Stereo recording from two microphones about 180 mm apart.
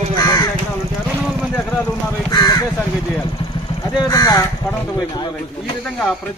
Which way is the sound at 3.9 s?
20° left (ahead or behind).